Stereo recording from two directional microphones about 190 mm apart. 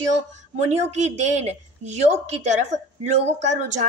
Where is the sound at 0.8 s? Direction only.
35° right (ahead or behind).